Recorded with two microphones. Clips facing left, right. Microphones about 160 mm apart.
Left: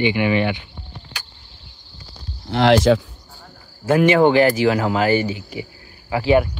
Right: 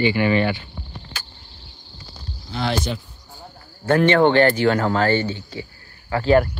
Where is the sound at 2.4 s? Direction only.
80° left.